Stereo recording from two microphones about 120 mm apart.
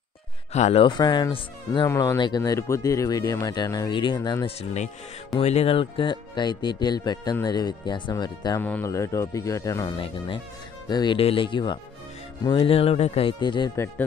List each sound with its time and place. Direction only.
0.5 s speech: 65° left (ahead or behind)
0.8 s speech: 40° left (ahead or behind)
1.9 s speech: 25° left (ahead or behind)
2.1 s speech: 35° left (ahead or behind)
3.9 s speech: 40° left (ahead or behind)
4.5 s speech: 60° left (ahead or behind); by 8.5 s 35° left (ahead or behind)
8.5 s speech: 15° left (ahead or behind)
8.8 s speech: 25° left (ahead or behind)
9.9 s speech: 45° left (ahead or behind)
11.1 s speech: 50° left (ahead or behind)